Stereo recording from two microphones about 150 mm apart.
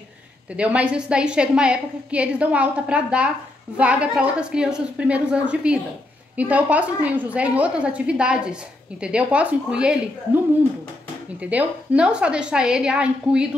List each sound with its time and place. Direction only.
0.6 s a woman's voice: 10° right (ahead or behind)
11.3 s a woman's voice: 10° right (ahead or behind)